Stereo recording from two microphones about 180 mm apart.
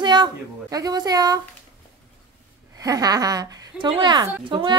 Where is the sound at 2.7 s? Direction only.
20° right (ahead or behind).